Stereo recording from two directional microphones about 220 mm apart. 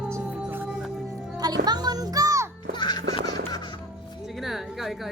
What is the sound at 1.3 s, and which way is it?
Music, 20° right (ahead or behind).